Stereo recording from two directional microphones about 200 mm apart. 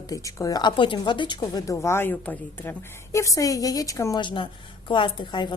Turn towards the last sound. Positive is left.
turn(degrees=25)  # may be behind; listen again after turning